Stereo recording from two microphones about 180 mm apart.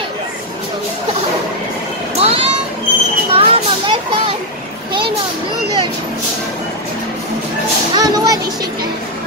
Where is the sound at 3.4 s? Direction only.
30° right (ahead or behind).